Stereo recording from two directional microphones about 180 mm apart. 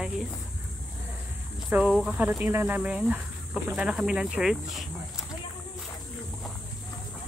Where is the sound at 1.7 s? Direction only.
5° right (ahead or behind).